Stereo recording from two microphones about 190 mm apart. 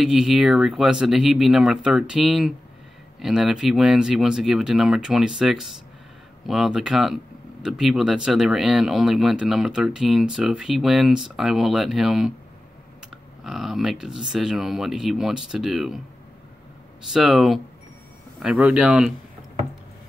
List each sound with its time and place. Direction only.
0.0 s speech: centre (ahead or behind)
17.1 s speech: centre (ahead or behind)